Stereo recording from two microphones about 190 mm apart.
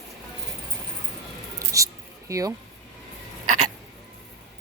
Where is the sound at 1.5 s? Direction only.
15° right (ahead or behind).